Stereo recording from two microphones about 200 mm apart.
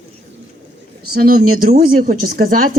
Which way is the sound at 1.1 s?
45° right (ahead or behind).